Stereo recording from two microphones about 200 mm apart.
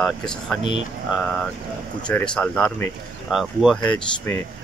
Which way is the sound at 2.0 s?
5° left (ahead or behind).